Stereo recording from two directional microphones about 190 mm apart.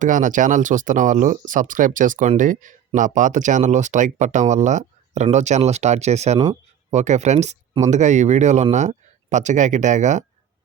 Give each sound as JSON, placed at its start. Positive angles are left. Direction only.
{"t": 0.0, "sound": "speech", "side_deg": -40}